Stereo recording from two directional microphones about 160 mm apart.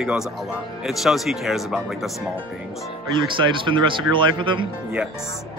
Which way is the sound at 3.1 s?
30° right (ahead or behind).